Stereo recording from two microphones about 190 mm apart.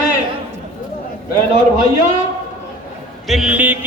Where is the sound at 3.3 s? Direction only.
5° right (ahead or behind).